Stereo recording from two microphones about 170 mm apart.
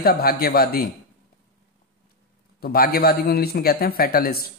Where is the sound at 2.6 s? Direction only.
60° left (ahead or behind).